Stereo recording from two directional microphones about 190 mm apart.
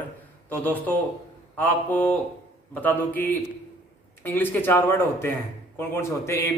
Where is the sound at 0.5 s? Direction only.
10° left (ahead or behind).